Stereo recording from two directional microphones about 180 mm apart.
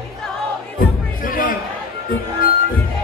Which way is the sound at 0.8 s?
50° left (ahead or behind).